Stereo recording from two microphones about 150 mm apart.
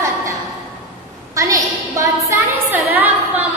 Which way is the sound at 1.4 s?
20° right (ahead or behind).